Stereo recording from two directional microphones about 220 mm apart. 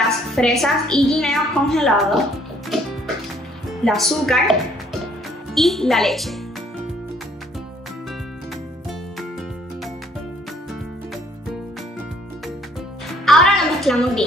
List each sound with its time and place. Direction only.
0.3 s a woman's voice: centre (ahead or behind)
3.8 s a woman's voice: centre (ahead or behind)
13.2 s music: centre (ahead or behind)